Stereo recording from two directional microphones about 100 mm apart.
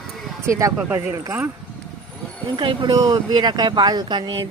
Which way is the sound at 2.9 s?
40° right (ahead or behind).